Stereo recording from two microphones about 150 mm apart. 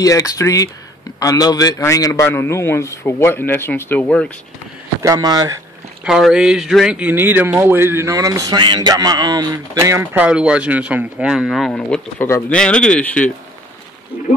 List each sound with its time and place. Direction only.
0.0 s a man's voice: 25° left (ahead or behind)
5.0 s speech: 25° right (ahead or behind)
6.0 s speech: 5° right (ahead or behind); by 10.2 s 20° right (ahead or behind)
10.2 s a man's voice: 5° right (ahead or behind)